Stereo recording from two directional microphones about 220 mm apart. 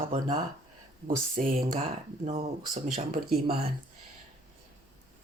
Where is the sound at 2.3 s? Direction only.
30° right (ahead or behind).